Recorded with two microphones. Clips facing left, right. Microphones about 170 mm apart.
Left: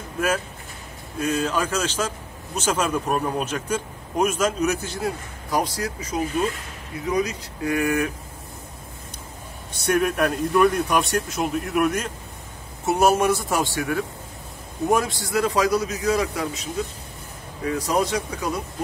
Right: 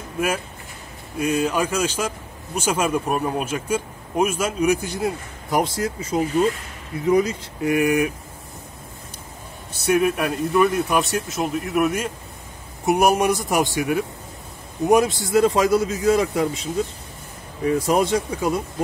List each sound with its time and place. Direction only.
1.2 s a man's voice: 10° right (ahead or behind)
9.8 s a man's voice: 5° right (ahead or behind); by 16.6 s 25° right (ahead or behind)
17.8 s a man's voice: 25° right (ahead or behind)